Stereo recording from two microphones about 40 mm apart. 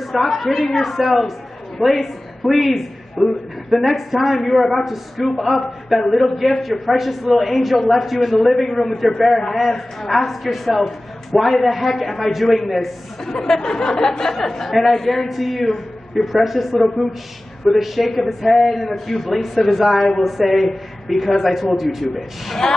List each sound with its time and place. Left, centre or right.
0.0 s a man's voice: centre
13.2 s a man's voice: centre